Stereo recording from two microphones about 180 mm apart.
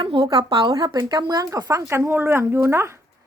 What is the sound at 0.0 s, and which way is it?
A woman's voice, 25° right (ahead or behind).